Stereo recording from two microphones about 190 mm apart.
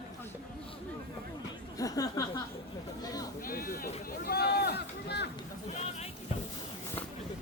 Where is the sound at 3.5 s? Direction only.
50° left (ahead or behind).